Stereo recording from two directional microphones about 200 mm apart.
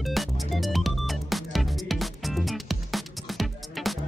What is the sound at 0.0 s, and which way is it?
Music, centre (ahead or behind).